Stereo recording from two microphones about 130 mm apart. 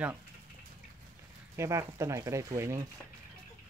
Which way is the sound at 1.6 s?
20° right (ahead or behind).